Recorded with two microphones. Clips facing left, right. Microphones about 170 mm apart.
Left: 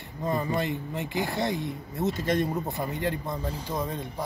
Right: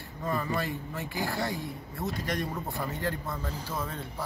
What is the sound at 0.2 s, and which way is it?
Speech, 20° left (ahead or behind).